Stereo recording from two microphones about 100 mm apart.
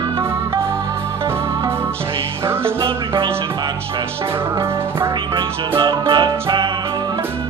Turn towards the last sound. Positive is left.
turn(degrees=-50)  # may be behind; listen again after turning